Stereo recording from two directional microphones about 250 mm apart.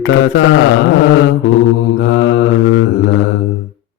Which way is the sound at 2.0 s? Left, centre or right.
Left.